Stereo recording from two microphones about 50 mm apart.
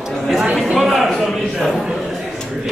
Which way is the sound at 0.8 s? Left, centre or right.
Centre.